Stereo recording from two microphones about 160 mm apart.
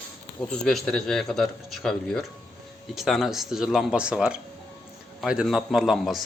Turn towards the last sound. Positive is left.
turn(degrees=0)  # may be behind; listen again after turning